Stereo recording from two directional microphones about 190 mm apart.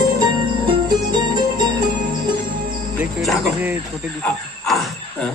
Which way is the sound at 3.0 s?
Centre (ahead or behind).